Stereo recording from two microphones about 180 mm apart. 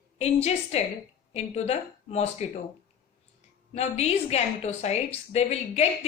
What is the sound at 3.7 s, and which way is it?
A woman's voice, 35° left (ahead or behind).